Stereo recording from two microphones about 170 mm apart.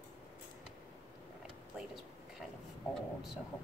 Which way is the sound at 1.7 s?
Centre (ahead or behind).